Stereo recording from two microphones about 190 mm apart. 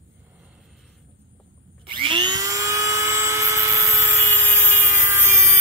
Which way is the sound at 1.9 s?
25° right (ahead or behind).